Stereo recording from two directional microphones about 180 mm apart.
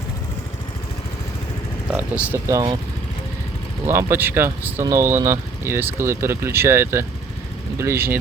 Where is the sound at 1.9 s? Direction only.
10° right (ahead or behind).